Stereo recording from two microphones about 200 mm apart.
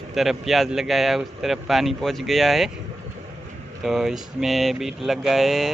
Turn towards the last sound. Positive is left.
turn(degrees=0)  # may be behind; listen again after turning